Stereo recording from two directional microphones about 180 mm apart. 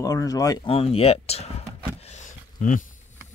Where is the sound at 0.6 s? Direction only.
35° left (ahead or behind).